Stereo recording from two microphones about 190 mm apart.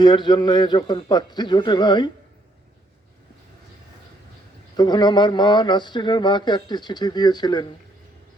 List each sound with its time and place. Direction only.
0.0 s speech: 25° left (ahead or behind)
4.8 s speech: 25° left (ahead or behind)